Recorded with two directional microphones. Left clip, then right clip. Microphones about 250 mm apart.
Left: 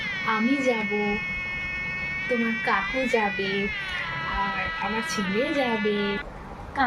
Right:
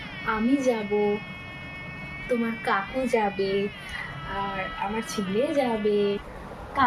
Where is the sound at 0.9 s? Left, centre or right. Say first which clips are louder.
Right 2 dB; left.